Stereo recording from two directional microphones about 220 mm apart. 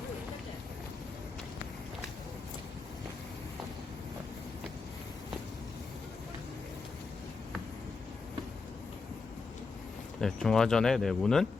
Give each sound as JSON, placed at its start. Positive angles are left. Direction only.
{"t": 10.2, "sound": "speech", "side_deg": 0}